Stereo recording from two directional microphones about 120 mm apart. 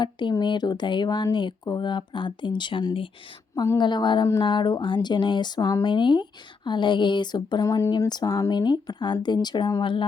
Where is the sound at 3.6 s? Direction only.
35° left (ahead or behind).